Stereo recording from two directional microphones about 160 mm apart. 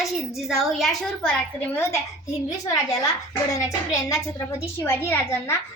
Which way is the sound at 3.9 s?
20° left (ahead or behind).